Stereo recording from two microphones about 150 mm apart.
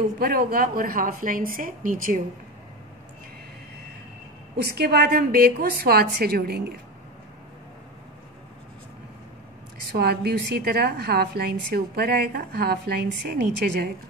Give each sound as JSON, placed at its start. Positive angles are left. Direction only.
{"t": 0.2, "sound": "speech", "side_deg": -80}
{"t": 4.6, "sound": "a woman's voice", "side_deg": -90}
{"t": 9.9, "sound": "a woman's voice", "side_deg": -90}